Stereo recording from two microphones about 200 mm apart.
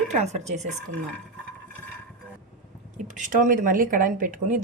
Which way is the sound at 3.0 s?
40° right (ahead or behind).